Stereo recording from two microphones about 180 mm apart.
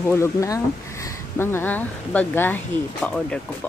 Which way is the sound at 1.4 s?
10° left (ahead or behind).